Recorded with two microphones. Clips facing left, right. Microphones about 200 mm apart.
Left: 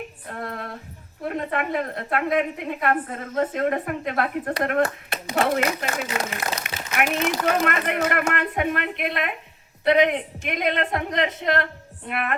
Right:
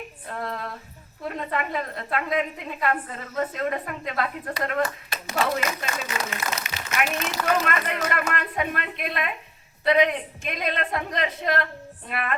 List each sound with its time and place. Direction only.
0.3 s female singing: 50° left (ahead or behind)
1.2 s a woman's voice: 55° left (ahead or behind)